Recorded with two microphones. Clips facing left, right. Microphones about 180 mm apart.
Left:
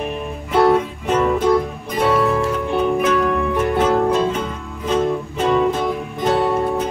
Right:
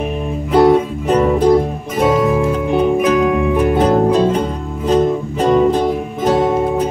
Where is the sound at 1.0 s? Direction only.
35° right (ahead or behind).